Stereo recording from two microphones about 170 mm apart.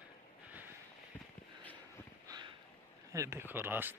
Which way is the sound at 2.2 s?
25° right (ahead or behind).